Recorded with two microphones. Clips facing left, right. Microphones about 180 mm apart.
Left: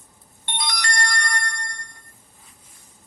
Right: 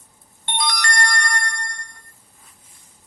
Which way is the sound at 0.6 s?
50° right (ahead or behind).